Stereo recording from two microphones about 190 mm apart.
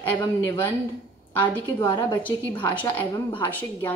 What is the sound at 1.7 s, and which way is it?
A woman's voice, 15° left (ahead or behind).